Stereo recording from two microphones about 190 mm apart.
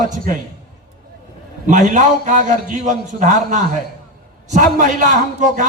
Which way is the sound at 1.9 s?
40° right (ahead or behind).